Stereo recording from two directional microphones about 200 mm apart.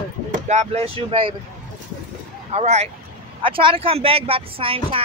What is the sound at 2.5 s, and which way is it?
Speech, 35° right (ahead or behind).